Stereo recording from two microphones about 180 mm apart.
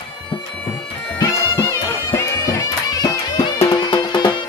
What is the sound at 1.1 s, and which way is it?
Bagpipes, 20° left (ahead or behind).